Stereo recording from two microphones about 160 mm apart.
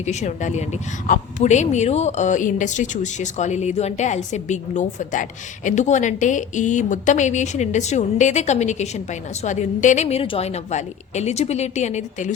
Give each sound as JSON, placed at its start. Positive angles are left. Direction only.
{"t": 0.0, "sound": "a woman's voice", "side_deg": 45}